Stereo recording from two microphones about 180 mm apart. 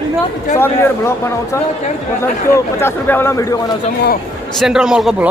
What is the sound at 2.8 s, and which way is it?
Speech, 10° left (ahead or behind).